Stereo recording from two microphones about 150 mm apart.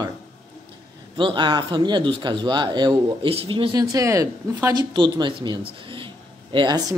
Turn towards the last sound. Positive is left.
turn(degrees=-30)  # may be behind; listen again after turning